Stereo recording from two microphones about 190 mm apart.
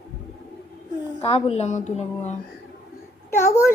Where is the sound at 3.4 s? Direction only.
15° left (ahead or behind).